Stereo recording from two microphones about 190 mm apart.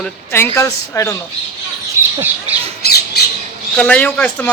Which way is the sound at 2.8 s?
60° left (ahead or behind).